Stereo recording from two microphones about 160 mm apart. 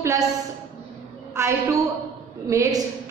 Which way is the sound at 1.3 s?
15° right (ahead or behind).